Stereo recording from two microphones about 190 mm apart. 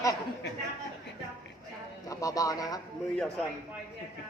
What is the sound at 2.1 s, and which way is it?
Speech, 20° left (ahead or behind).